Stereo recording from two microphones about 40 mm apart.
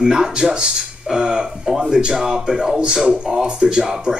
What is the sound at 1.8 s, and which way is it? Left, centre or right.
Speech, right.